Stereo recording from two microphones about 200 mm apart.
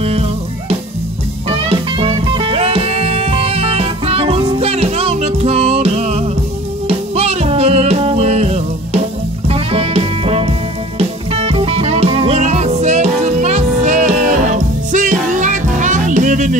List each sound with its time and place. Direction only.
1.5 s music: 30° right (ahead or behind)